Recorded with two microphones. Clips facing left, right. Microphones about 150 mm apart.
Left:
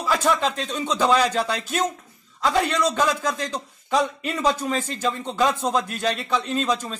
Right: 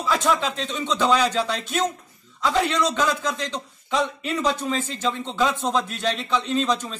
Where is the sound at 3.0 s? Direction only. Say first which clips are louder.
Left 1 dB; 45° left (ahead or behind).